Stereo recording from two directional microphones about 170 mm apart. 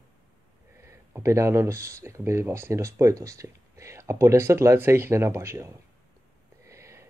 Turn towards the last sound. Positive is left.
turn(degrees=-15)  # may be behind; listen again after turning